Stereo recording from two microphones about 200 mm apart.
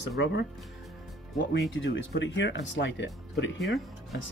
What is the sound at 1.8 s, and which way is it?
Speech, 65° left (ahead or behind).